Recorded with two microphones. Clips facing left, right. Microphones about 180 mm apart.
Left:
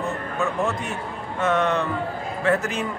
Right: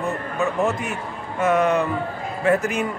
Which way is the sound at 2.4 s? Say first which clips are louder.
Right 3 dB; centre (ahead or behind).